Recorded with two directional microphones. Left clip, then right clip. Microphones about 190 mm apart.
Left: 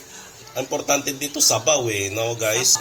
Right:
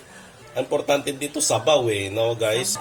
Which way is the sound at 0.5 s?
15° right (ahead or behind).